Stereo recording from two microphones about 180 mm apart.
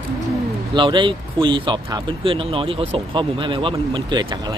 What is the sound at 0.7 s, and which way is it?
Speech, 25° right (ahead or behind).